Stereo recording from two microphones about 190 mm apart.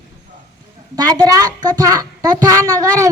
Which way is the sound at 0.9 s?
20° right (ahead or behind).